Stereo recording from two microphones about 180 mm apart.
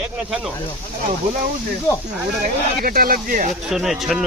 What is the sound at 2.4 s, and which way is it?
Speech, 55° right (ahead or behind).